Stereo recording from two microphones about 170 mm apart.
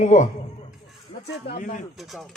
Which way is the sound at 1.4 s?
55° left (ahead or behind).